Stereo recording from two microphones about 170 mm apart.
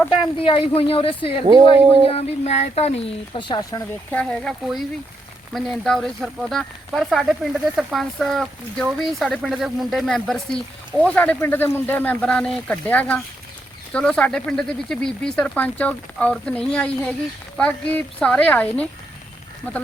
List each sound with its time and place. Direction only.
0.3 s speech: 30° left (ahead or behind)
4.1 s speech: 5° left (ahead or behind)